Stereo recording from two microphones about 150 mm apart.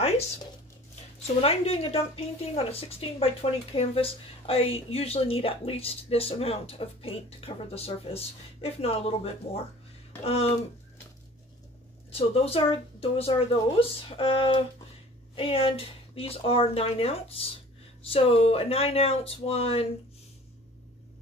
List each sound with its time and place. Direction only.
1.2 s speech: 40° left (ahead or behind)
12.1 s speech: 40° left (ahead or behind)